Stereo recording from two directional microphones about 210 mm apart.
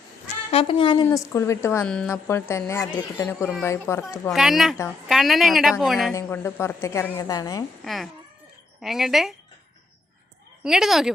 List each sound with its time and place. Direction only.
0.5 s a woman's voice: 25° left (ahead or behind)
4.3 s a woman's voice: centre (ahead or behind)
6.1 s a woman's voice: 10° left (ahead or behind)
7.9 s a woman's voice: centre (ahead or behind)
10.6 s a woman's voice: centre (ahead or behind)